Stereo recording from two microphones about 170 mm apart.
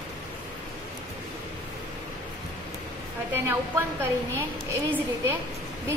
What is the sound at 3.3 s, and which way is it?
A woman's voice, 15° right (ahead or behind).